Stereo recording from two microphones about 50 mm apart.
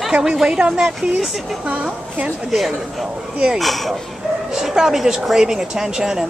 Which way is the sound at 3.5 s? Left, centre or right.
Centre.